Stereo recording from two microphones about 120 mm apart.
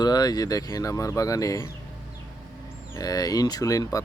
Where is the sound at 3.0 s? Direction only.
30° left (ahead or behind).